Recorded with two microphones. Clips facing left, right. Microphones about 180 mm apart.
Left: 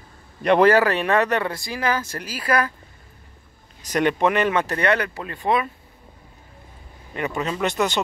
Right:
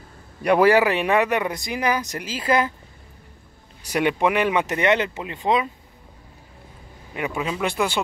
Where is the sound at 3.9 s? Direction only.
10° right (ahead or behind).